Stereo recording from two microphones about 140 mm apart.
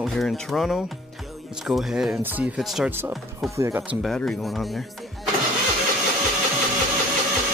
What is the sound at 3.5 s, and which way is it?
Speech, 20° right (ahead or behind).